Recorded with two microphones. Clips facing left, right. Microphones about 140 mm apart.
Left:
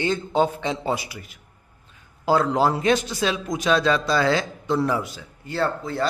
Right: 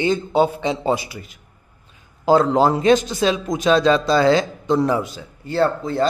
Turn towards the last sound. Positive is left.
turn(degrees=-25)  # may be behind; listen again after turning